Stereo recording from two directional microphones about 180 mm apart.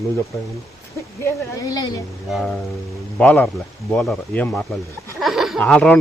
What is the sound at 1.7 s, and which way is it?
Speech, 20° left (ahead or behind).